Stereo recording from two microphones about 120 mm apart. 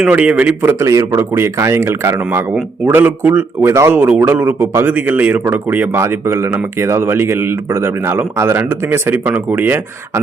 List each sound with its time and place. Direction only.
0.0 s speech: 10° right (ahead or behind)